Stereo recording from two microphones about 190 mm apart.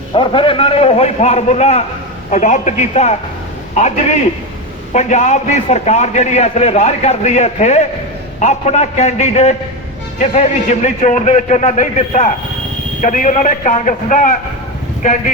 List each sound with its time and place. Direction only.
0.1 s a man's voice: 25° left (ahead or behind); by 14.3 s 40° left (ahead or behind)